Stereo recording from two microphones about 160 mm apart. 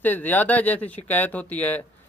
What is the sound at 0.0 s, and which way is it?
Speech, 10° left (ahead or behind).